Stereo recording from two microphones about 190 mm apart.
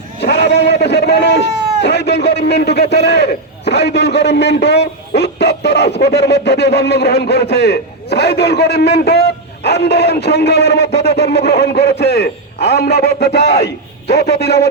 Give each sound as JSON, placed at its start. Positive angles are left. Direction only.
{"t": 0.2, "sound": "a man's voice", "side_deg": 60}